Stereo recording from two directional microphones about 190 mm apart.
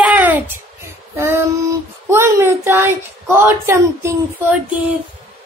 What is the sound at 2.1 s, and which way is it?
Speech, 15° right (ahead or behind).